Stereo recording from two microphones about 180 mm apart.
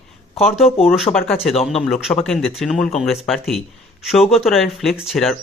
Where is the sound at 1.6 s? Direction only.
Centre (ahead or behind).